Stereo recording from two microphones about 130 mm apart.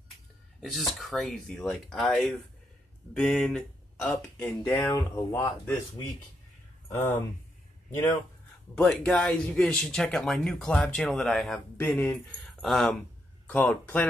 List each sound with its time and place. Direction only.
0.6 s speech: centre (ahead or behind)
4.8 s speech: 25° left (ahead or behind)
6.9 s speech: 20° left (ahead or behind)
8.7 s speech: 5° left (ahead or behind)
11.7 s speech: 15° left (ahead or behind)